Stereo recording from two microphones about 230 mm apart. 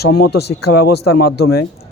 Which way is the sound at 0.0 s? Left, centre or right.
Left.